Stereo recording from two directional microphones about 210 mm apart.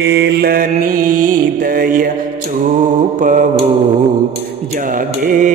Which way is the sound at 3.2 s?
40° right (ahead or behind).